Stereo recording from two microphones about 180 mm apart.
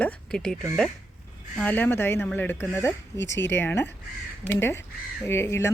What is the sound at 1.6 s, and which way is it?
Speech, 10° left (ahead or behind).